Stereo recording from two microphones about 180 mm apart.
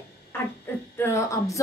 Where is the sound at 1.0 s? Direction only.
15° left (ahead or behind).